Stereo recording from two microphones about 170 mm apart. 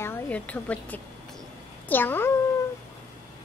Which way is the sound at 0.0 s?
10° left (ahead or behind).